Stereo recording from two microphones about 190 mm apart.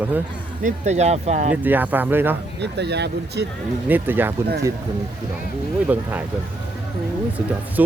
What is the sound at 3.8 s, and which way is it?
Speech, 10° right (ahead or behind).